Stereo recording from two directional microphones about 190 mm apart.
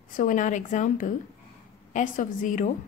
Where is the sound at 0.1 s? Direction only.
45° left (ahead or behind).